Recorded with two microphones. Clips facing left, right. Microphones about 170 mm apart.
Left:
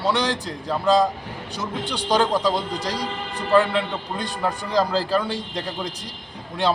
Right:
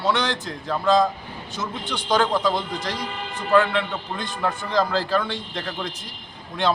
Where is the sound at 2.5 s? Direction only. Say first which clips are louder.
Left 1 dB; 35° left (ahead or behind).